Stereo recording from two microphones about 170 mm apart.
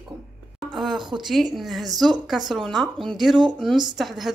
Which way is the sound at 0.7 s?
Centre (ahead or behind).